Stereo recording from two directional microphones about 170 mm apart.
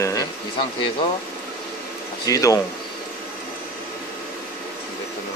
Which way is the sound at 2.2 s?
20° left (ahead or behind).